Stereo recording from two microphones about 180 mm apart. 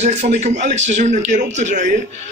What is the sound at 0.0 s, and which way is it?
A man's voice, 40° right (ahead or behind).